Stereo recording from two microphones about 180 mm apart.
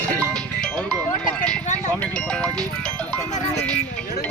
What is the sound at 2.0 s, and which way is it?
Speech, 5° left (ahead or behind).